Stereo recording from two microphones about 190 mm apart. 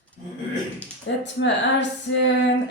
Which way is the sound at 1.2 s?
70° left (ahead or behind).